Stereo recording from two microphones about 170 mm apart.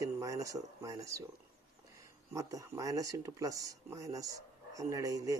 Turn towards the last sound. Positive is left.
turn(degrees=-20)  # may be behind; listen again after turning